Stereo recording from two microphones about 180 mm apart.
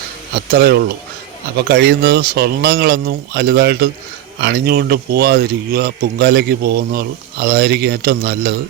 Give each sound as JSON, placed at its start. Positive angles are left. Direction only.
{"t": 0.5, "sound": "a man's voice", "side_deg": -60}